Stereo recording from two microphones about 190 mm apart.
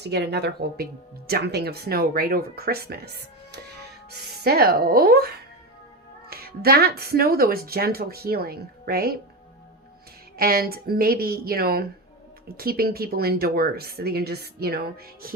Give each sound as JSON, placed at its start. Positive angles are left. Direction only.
{"t": 0.0, "sound": "a woman's voice", "side_deg": -60}
{"t": 10.3, "sound": "a woman's voice", "side_deg": -50}